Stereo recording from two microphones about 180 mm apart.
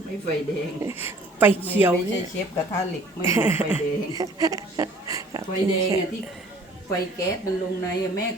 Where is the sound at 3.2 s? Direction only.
15° right (ahead or behind).